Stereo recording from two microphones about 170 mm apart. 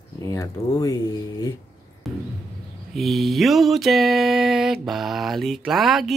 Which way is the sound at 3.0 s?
Centre (ahead or behind).